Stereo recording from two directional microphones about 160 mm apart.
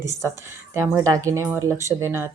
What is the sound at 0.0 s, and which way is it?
Speech, 20° right (ahead or behind).